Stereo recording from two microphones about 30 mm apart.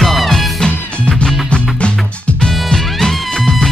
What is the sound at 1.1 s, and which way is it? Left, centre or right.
Music, left.